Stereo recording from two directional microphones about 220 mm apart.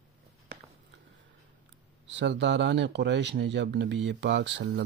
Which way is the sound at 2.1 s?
55° right (ahead or behind).